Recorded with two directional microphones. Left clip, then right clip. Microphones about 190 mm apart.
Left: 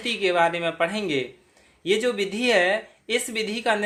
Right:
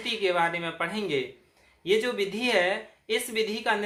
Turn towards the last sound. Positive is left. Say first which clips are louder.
# left 3 dB
turn(degrees=40)  # may be behind; listen again after turning